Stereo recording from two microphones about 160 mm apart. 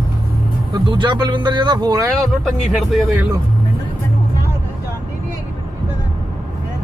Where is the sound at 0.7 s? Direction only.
30° right (ahead or behind).